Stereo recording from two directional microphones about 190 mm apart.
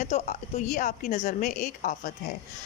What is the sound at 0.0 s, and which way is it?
A woman's voice, 35° left (ahead or behind).